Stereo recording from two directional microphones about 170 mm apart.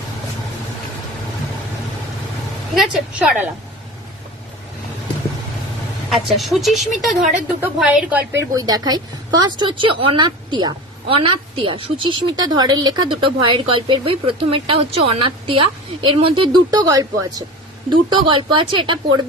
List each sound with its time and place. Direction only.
2.7 s speech: 5° right (ahead or behind)
6.1 s speech: centre (ahead or behind)
8.5 s a woman's voice: 25° right (ahead or behind)